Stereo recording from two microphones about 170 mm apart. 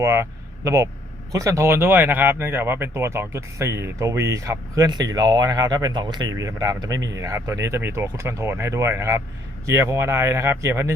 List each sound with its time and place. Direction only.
0.0 s speech: 15° right (ahead or behind)